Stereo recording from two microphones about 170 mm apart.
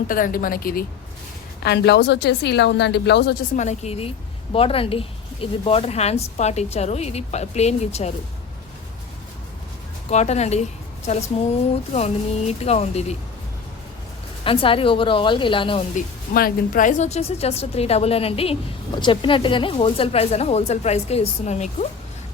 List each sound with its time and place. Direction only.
0.1 s speech: 55° left (ahead or behind)
1.6 s speech: 80° left
3.5 s speech: 45° left (ahead or behind)
10.1 s speech: 40° left (ahead or behind)
14.4 s speech: 30° left (ahead or behind)
16.0 s a woman's voice: 55° left (ahead or behind)